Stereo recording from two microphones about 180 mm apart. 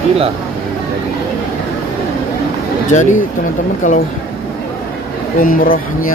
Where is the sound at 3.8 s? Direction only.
45° left (ahead or behind).